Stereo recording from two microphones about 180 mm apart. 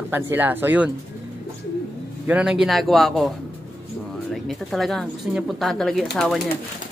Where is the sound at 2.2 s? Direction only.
5° right (ahead or behind).